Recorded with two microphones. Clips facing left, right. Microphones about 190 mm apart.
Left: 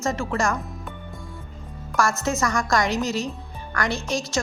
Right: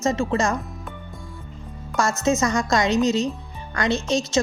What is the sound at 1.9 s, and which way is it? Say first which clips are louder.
A woman's voice: right 2 dB; 20° right (ahead or behind).